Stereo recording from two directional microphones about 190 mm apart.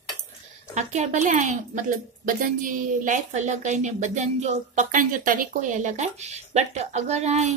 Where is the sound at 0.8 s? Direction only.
40° right (ahead or behind).